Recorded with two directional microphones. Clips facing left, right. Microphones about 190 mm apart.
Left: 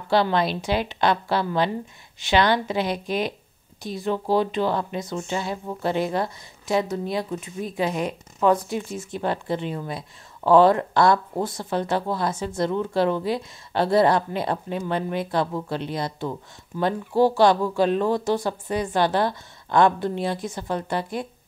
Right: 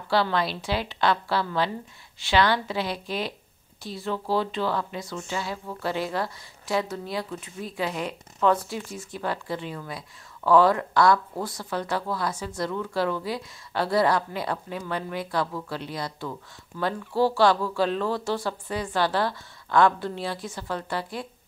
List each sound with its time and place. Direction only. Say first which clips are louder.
0.1 s speech: left 4 dB; 20° left (ahead or behind)